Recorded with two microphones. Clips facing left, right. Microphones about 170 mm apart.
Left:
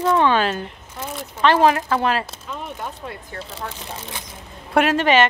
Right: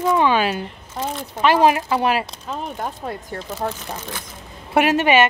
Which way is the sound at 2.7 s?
45° right (ahead or behind).